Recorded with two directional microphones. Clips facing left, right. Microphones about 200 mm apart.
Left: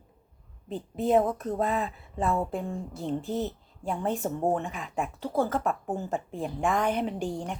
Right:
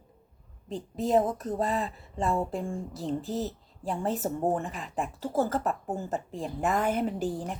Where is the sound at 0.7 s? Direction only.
Centre (ahead or behind).